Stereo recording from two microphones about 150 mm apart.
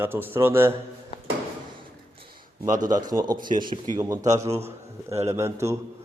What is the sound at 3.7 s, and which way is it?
Speech, 45° right (ahead or behind).